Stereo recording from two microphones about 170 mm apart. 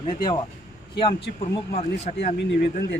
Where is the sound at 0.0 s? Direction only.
30° left (ahead or behind).